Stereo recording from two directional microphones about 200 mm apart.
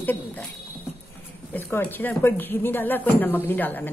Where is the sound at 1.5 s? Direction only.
10° left (ahead or behind).